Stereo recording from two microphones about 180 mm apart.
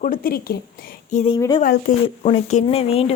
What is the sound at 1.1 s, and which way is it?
Speech, 35° left (ahead or behind).